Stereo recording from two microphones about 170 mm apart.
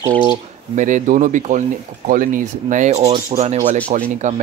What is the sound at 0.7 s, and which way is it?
Speech, 50° right (ahead or behind).